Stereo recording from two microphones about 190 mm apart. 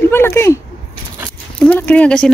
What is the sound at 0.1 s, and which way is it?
Speech, 15° left (ahead or behind).